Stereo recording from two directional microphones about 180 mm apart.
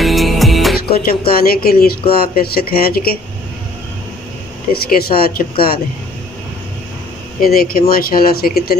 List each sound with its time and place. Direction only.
0.0 s music: centre (ahead or behind)
0.8 s speech: 55° left (ahead or behind)
4.8 s speech: 55° left (ahead or behind)
7.4 s speech: 55° left (ahead or behind)